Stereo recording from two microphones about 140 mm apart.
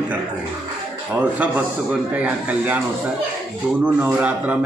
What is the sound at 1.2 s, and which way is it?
A man's voice, 10° right (ahead or behind).